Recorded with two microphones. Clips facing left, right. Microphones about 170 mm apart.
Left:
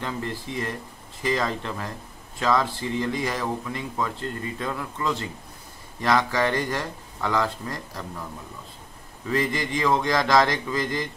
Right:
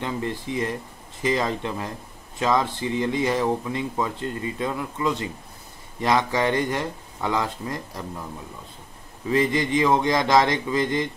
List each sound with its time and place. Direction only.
0.0 s speech: 20° right (ahead or behind)
9.3 s speech: 20° right (ahead or behind)